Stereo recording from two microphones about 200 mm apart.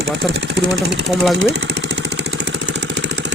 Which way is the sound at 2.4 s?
60° right (ahead or behind).